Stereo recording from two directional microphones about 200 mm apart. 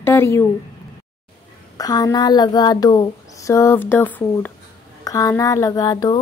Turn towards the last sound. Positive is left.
turn(degrees=20)  # may be behind; listen again after turning